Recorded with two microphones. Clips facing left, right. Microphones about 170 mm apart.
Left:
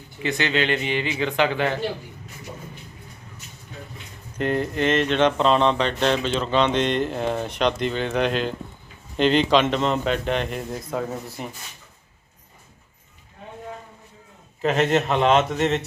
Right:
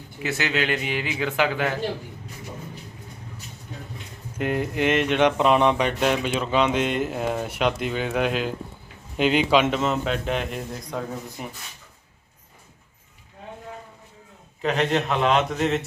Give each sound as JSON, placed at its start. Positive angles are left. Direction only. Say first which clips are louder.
{"t": 0.2, "sound": "speech", "louder": "left 2 dB", "side_deg": -5}
{"t": 4.4, "sound": "a man's voice", "louder": "left 1 dB", "side_deg": -10}
{"t": 14.6, "sound": "a man's voice", "louder": "left 3 dB", "side_deg": 0}